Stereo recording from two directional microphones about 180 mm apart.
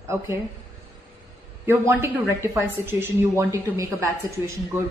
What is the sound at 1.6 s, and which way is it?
Speech, 15° right (ahead or behind).